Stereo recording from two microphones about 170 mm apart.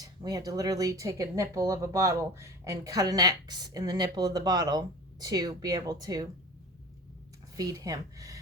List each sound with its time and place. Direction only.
0.0 s speech: 20° right (ahead or behind)
7.5 s speech: 20° right (ahead or behind)